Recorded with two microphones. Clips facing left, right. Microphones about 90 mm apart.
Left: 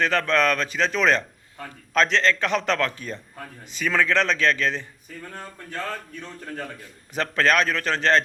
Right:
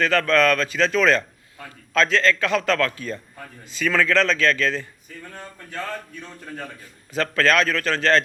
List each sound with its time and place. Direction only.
0.0 s a man's voice: 20° left (ahead or behind)
7.2 s a man's voice: 20° left (ahead or behind)